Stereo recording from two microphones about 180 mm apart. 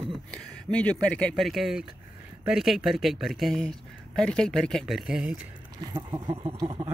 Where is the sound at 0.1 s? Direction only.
5° left (ahead or behind).